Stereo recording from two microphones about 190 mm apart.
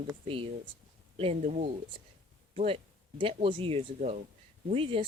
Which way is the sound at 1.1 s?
30° right (ahead or behind).